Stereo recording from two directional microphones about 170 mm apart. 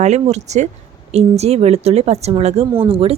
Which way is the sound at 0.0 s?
40° right (ahead or behind).